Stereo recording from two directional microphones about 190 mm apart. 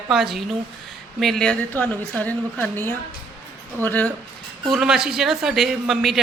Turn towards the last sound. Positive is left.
turn(degrees=0)  # may be behind; listen again after turning